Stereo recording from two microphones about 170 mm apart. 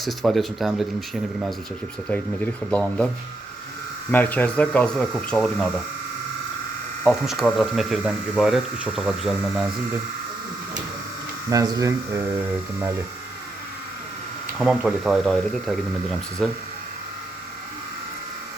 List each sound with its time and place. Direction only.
0.0 s speech: centre (ahead or behind)
2.6 s speech: 5° left (ahead or behind)
4.1 s speech: 10° left (ahead or behind)
7.0 s speech: centre (ahead or behind)
11.4 s speech: 20° right (ahead or behind)
14.6 s speech: 5° right (ahead or behind)